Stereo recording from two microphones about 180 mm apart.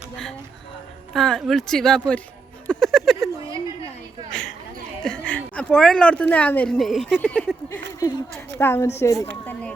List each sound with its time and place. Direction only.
1.1 s speech: centre (ahead or behind)
2.6 s music: centre (ahead or behind)
4.3 s speech: 5° left (ahead or behind)
7.9 s a woman's voice: 20° left (ahead or behind)